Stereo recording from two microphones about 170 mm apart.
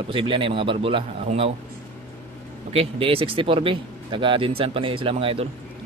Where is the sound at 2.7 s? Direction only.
35° right (ahead or behind).